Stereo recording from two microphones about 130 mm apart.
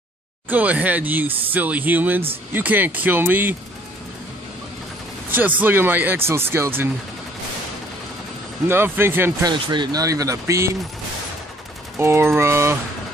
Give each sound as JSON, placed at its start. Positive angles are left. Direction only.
{"t": 0.5, "sound": "speech", "side_deg": -10}
{"t": 5.3, "sound": "speech", "side_deg": -15}
{"t": 8.6, "sound": "speech", "side_deg": -15}
{"t": 9.5, "sound": "speech", "side_deg": -35}
{"t": 12.0, "sound": "speech", "side_deg": -20}